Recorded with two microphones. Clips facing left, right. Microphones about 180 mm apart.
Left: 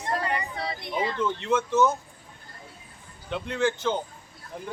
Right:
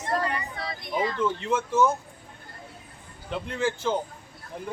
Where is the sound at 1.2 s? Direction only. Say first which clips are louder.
Left 1 dB; 5° right (ahead or behind).